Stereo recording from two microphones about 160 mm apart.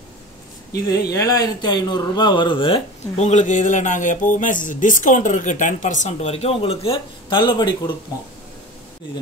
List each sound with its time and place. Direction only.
1.0 s speech: 20° left (ahead or behind)
3.2 s a man's voice: 50° left (ahead or behind); by 7.9 s 25° left (ahead or behind)